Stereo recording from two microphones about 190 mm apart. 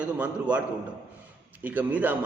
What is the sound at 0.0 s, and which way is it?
Speech, 5° right (ahead or behind).